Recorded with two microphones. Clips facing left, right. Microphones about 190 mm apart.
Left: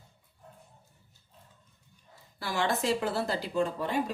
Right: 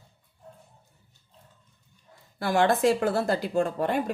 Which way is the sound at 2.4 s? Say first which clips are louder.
Right 8 dB; 55° right (ahead or behind).